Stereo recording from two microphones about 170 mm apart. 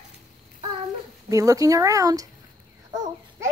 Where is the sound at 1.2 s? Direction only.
20° right (ahead or behind).